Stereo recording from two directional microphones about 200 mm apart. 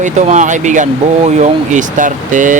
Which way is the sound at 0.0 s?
35° right (ahead or behind).